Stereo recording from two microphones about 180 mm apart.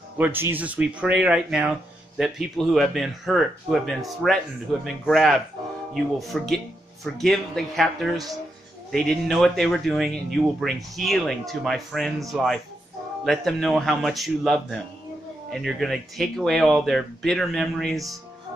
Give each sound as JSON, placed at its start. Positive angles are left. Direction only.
{"t": 0.2, "sound": "speech", "side_deg": -10}